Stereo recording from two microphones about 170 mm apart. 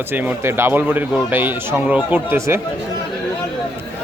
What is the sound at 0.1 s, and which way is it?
Speech, 10° right (ahead or behind).